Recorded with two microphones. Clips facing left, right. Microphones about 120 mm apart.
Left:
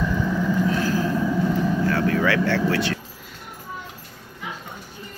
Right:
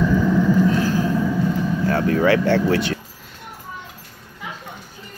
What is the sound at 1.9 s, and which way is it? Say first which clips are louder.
Vehicle: right 7 dB; 30° right (ahead or behind).